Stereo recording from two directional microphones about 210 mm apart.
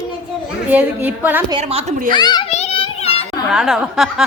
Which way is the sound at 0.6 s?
10° right (ahead or behind).